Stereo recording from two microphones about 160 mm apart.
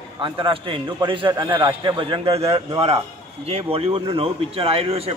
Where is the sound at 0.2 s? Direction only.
30° right (ahead or behind).